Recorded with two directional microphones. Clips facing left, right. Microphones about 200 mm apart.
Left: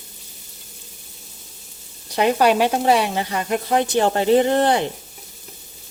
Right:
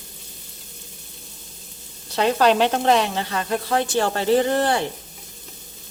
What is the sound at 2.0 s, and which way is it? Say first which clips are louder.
Speech: left 1 dB; 15° left (ahead or behind).